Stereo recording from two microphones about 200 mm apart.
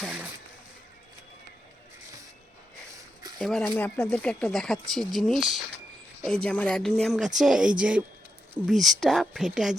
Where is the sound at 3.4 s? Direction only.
Centre (ahead or behind).